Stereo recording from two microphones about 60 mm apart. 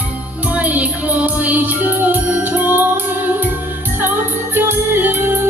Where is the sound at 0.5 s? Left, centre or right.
Right.